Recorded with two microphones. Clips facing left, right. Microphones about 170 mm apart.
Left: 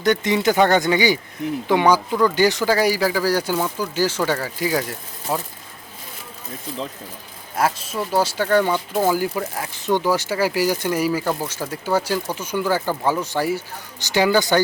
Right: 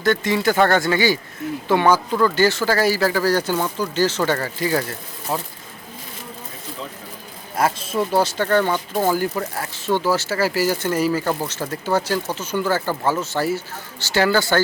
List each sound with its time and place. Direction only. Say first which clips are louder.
0.0 s speech: left 1 dB; 20° left (ahead or behind)
7.5 s speech: right 1 dB; 5° left (ahead or behind)